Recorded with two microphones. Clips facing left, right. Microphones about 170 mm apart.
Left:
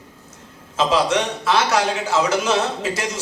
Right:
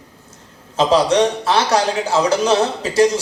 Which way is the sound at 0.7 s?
30° right (ahead or behind).